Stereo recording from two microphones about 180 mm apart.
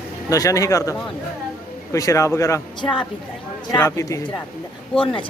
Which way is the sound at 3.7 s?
15° left (ahead or behind).